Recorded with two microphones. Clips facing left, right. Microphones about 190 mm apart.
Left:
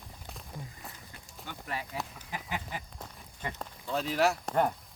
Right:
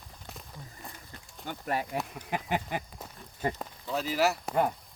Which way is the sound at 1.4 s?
45° right (ahead or behind).